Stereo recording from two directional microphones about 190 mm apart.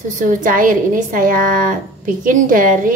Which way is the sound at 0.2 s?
40° right (ahead or behind).